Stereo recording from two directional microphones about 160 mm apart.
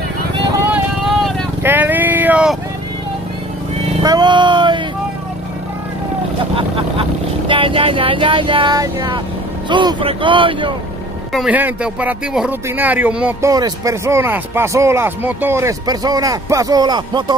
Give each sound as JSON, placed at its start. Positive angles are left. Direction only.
{"t": 0.6, "sound": "vehicle", "side_deg": -10}
{"t": 4.0, "sound": "music", "side_deg": -25}
{"t": 6.5, "sound": "vehicle", "side_deg": -35}
{"t": 9.7, "sound": "speech", "side_deg": -30}
{"t": 11.3, "sound": "speech", "side_deg": -10}
{"t": 13.5, "sound": "speech", "side_deg": -25}